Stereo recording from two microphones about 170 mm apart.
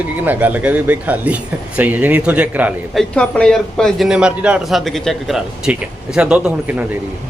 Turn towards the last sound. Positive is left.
turn(degrees=-10)  # may be behind; listen again after turning